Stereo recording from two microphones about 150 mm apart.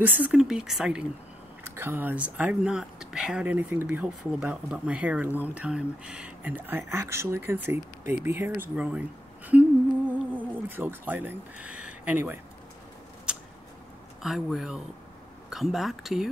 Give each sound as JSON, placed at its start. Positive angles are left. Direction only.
{"t": 0.0, "sound": "speech", "side_deg": -10}
{"t": 9.5, "sound": "humming", "side_deg": -10}
{"t": 13.3, "sound": "a sound", "side_deg": -5}
{"t": 14.2, "sound": "speech", "side_deg": 0}